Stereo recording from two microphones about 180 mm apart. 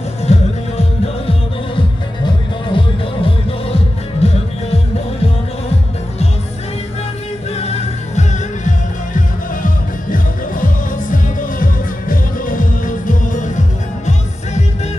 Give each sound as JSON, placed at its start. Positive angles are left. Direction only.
{"t": 0.2, "sound": "music", "side_deg": 35}
{"t": 7.5, "sound": "music", "side_deg": 35}